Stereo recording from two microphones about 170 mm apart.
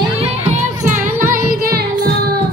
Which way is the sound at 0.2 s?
45° right (ahead or behind).